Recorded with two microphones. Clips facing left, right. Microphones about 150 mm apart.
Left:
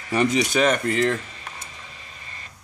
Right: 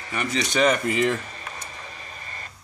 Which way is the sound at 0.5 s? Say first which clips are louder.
Left 1 dB; centre (ahead or behind).